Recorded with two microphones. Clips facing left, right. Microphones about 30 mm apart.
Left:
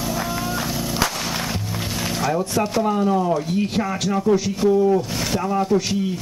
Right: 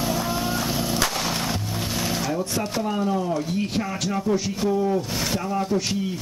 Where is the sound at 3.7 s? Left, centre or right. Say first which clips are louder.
Left 4 dB; centre.